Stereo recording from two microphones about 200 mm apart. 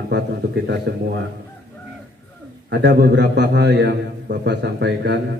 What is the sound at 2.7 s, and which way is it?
A man's voice, 55° right (ahead or behind).